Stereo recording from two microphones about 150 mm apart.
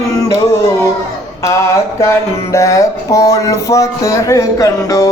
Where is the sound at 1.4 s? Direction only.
20° left (ahead or behind).